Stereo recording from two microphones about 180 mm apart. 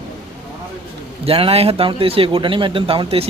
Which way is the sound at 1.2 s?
30° right (ahead or behind).